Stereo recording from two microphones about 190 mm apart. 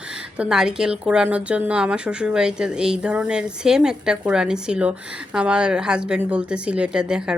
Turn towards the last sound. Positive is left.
turn(degrees=-5)  # may be behind; listen again after turning